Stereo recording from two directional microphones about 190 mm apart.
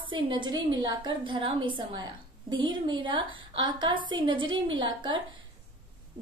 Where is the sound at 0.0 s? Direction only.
25° right (ahead or behind).